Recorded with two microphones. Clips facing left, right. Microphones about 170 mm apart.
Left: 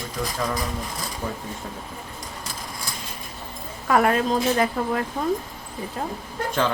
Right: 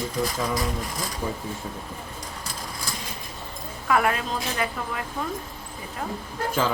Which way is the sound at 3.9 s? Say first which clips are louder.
Left 4 dB; 40° left (ahead or behind).